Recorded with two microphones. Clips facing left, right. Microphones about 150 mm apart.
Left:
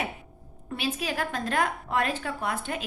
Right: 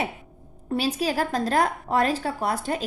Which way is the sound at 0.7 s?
40° right (ahead or behind).